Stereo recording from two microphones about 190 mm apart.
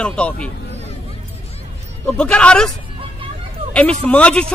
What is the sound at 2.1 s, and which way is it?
Speech, 5° left (ahead or behind).